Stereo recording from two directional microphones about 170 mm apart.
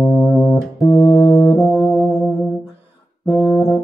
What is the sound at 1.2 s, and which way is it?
Music, 20° left (ahead or behind).